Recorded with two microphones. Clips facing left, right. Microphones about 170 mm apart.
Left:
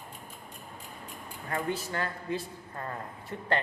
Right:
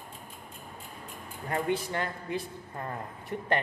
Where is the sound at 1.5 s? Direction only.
25° right (ahead or behind).